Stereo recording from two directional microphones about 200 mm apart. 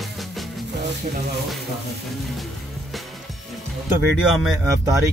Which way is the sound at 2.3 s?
Centre (ahead or behind).